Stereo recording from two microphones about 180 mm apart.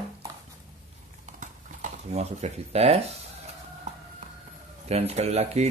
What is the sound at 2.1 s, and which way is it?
Speech, 35° right (ahead or behind).